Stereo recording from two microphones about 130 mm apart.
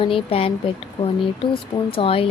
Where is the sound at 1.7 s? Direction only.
45° left (ahead or behind).